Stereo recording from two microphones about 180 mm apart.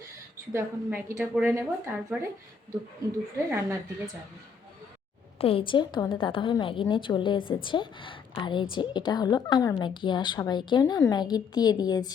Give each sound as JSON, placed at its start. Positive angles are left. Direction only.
{"t": 0.5, "sound": "speech", "side_deg": -15}
{"t": 3.3, "sound": "speech", "side_deg": -15}
{"t": 5.4, "sound": "a woman's voice", "side_deg": 30}